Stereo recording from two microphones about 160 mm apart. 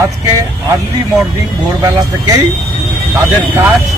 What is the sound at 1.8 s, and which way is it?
Speech, 25° right (ahead or behind).